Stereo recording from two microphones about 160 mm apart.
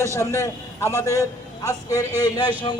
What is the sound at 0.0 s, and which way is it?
A man's voice, 15° left (ahead or behind).